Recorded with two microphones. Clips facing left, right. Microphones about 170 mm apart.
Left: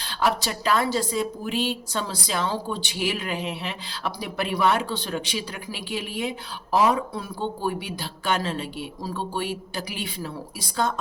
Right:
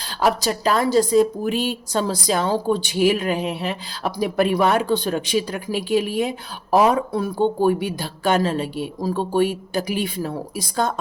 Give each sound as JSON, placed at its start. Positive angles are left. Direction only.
{"t": 0.2, "sound": "a woman's voice", "side_deg": -40}